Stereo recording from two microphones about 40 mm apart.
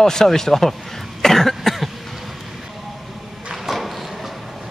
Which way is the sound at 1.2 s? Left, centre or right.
Centre.